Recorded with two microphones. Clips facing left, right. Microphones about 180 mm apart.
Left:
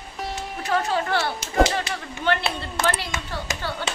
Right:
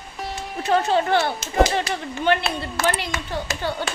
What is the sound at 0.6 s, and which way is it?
Speech, 25° right (ahead or behind).